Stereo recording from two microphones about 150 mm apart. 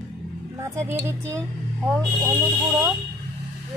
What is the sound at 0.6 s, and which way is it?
Speech, 20° right (ahead or behind).